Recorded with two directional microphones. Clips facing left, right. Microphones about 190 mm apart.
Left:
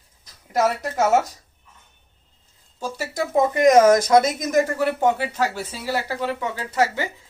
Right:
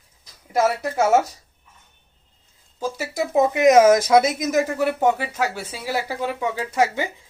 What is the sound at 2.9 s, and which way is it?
Speech, 5° right (ahead or behind).